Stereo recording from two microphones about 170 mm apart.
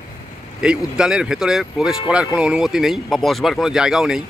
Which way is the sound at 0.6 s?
5° right (ahead or behind).